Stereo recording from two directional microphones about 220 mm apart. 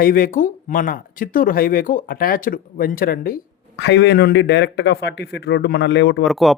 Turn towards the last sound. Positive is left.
turn(degrees=0)  # may be behind; listen again after turning